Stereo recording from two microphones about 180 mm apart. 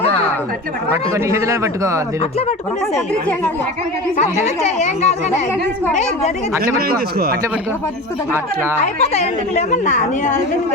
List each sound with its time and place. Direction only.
1.1 s a man's voice: 15° right (ahead or behind)
4.4 s speech: 40° left (ahead or behind)
6.7 s a man's voice: 60° right (ahead or behind)
8.8 s a woman's voice: 40° left (ahead or behind)